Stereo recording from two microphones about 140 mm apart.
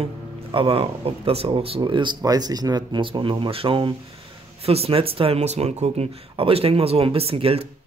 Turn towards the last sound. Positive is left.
turn(degrees=-40)  # may be behind; listen again after turning